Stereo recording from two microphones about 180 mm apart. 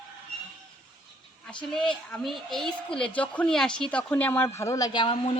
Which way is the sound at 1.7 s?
5° left (ahead or behind).